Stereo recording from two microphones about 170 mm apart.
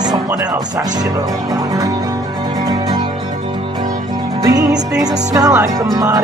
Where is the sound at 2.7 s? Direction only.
25° right (ahead or behind).